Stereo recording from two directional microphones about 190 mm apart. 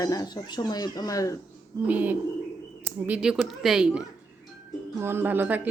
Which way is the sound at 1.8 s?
10° right (ahead or behind).